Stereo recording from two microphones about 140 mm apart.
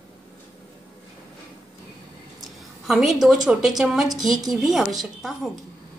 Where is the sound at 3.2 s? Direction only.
Centre (ahead or behind).